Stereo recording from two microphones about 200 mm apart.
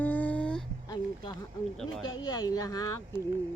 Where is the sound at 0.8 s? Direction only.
20° left (ahead or behind).